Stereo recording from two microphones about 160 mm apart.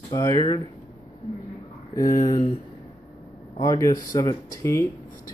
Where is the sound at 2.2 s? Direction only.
30° left (ahead or behind).